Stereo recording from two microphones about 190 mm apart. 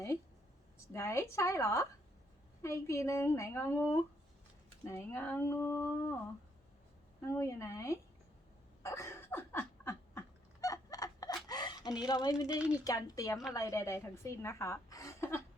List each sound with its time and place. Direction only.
0.9 s a woman's voice: 15° left (ahead or behind)
7.2 s a woman's voice: 15° left (ahead or behind)
8.8 s laughter: 15° left (ahead or behind)
11.4 s a sound: 20° left (ahead or behind)
12.0 s a woman's voice: 20° left (ahead or behind)